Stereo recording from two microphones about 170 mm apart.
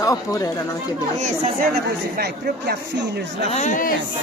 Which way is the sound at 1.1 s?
45° right (ahead or behind).